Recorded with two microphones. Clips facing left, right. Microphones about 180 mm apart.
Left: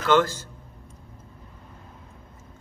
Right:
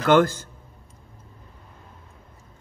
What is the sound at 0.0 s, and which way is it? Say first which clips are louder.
Speech: right 3 dB; 50° right (ahead or behind).